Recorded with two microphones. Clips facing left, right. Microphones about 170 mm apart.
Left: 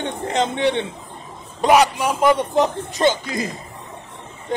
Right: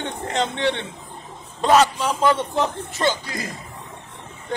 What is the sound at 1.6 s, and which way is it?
A man's voice, 15° left (ahead or behind).